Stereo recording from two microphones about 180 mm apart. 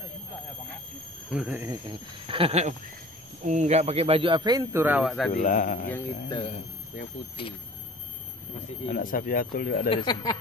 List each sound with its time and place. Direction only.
1.3 s speech: 10° right (ahead or behind)
1.7 s speech: 25° right (ahead or behind); by 5.3 s centre (ahead or behind)
5.3 s speech: 45° left (ahead or behind)
6.2 s speech: 30° left (ahead or behind)
8.8 s speech: 50° left (ahead or behind)
10.1 s speech: 25° left (ahead or behind)